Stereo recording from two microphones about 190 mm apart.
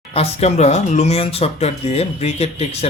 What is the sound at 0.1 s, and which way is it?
Speech, 30° left (ahead or behind).